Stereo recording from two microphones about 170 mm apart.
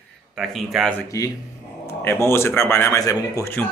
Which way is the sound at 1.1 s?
20° left (ahead or behind).